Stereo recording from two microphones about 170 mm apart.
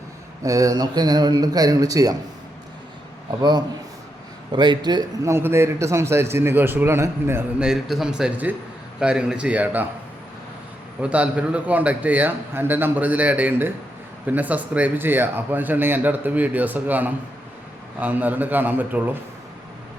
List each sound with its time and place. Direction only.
0.4 s speech: 20° right (ahead or behind)
4.5 s a man's voice: 25° right (ahead or behind); by 9.8 s 10° right (ahead or behind)
11.0 s a man's voice: 5° right (ahead or behind)